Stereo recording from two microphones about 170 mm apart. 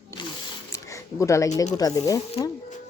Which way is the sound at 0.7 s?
20° left (ahead or behind).